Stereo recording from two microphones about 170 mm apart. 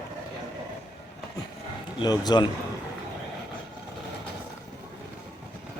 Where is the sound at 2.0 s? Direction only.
25° left (ahead or behind).